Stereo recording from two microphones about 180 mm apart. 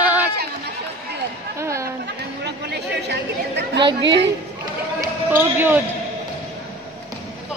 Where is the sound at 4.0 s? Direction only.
80° right.